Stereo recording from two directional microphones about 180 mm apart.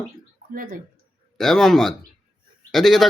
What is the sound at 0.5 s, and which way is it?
Speech, 50° right (ahead or behind).